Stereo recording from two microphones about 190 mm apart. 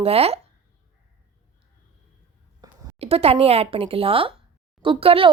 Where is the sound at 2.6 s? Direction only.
20° right (ahead or behind).